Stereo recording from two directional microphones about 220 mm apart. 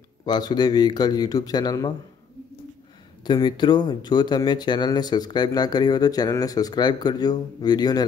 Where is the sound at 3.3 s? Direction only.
20° left (ahead or behind).